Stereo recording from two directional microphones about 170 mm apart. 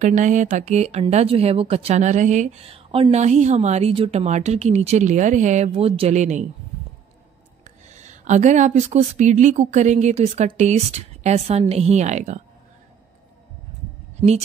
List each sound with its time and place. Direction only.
0.0 s speech: 45° right (ahead or behind)
7.9 s speech: 45° right (ahead or behind)
14.1 s a woman's voice: 40° right (ahead or behind)